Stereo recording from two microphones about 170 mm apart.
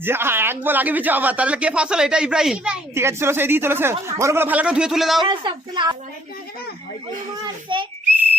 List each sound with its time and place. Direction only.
0.0 s speech: 15° right (ahead or behind)
2.9 s speech: 15° right (ahead or behind)
5.2 s a woman's voice: 30° right (ahead or behind)
7.4 s a woman's voice: 30° right (ahead or behind)